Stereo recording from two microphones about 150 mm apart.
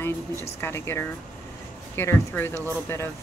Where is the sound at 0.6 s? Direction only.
15° left (ahead or behind).